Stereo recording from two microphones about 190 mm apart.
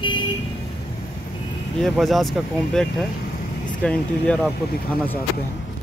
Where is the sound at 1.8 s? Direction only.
Centre (ahead or behind).